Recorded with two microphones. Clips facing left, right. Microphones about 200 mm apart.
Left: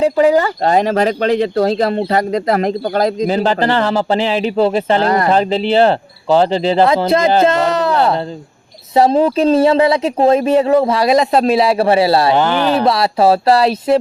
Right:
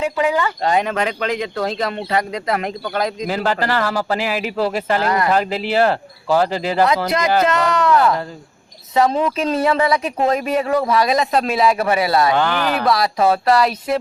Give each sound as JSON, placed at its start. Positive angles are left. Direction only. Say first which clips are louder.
{"t": 0.0, "sound": "speech", "louder": "left 7 dB", "side_deg": 35}
{"t": 3.2, "sound": "a man's voice", "louder": "left 6 dB", "side_deg": 20}